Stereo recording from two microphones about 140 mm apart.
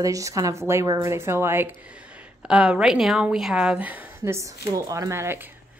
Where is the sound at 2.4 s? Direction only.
5° right (ahead or behind).